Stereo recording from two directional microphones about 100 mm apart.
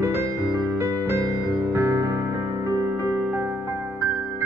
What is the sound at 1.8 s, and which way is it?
Music, 20° right (ahead or behind).